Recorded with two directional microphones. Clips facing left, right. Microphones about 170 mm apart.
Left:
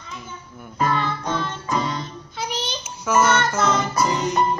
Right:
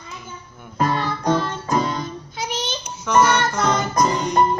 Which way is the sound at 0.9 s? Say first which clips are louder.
Right 4 dB; 40° right (ahead or behind).